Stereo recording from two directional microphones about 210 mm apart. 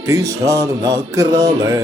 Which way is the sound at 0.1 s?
15° right (ahead or behind).